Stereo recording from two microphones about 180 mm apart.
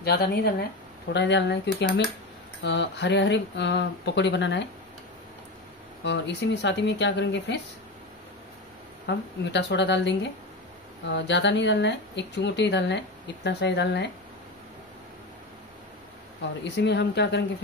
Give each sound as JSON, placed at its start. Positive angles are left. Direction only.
{"t": 0.0, "sound": "speech", "side_deg": 60}
{"t": 1.1, "sound": "speech", "side_deg": 75}
{"t": 6.0, "sound": "speech", "side_deg": 75}
{"t": 9.0, "sound": "speech", "side_deg": 75}
{"t": 16.6, "sound": "speech", "side_deg": 75}